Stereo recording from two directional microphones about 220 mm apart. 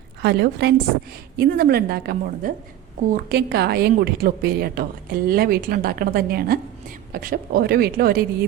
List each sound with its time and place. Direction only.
0.2 s a woman's voice: 50° right (ahead or behind)